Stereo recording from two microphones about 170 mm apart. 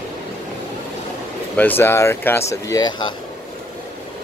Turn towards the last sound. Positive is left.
turn(degrees=25)  # may be behind; listen again after turning